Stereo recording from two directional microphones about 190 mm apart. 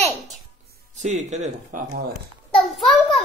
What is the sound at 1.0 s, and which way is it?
Speech, 35° right (ahead or behind).